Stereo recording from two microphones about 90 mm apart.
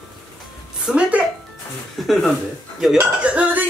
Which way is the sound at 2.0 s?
Centre (ahead or behind).